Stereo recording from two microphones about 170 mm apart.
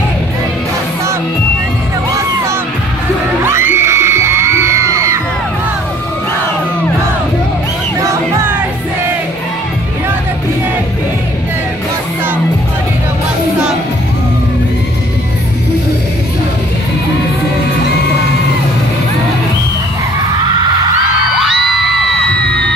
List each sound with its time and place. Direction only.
3.4 s crowd: 15° right (ahead or behind)
8.0 s music: 15° right (ahead or behind)